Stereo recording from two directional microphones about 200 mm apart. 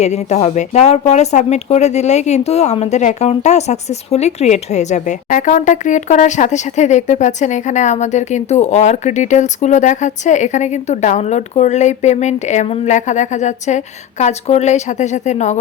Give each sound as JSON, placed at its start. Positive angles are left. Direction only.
{"t": 0.0, "sound": "speech", "side_deg": 35}